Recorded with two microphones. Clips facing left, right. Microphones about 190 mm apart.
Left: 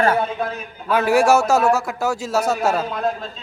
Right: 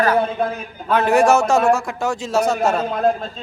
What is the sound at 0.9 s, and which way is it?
A man's voice, 10° left (ahead or behind).